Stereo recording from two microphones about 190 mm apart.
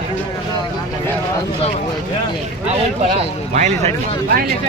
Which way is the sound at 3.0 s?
40° right (ahead or behind).